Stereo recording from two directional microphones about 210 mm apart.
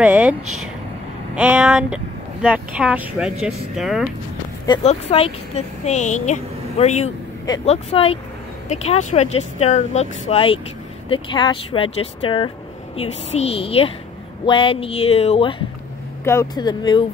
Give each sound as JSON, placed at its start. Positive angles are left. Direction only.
{"t": 0.0, "sound": "speech", "side_deg": -5}
{"t": 4.6, "sound": "speech", "side_deg": 30}
{"t": 16.3, "sound": "speech", "side_deg": 15}